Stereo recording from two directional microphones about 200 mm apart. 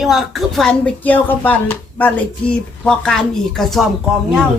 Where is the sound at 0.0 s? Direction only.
Centre (ahead or behind).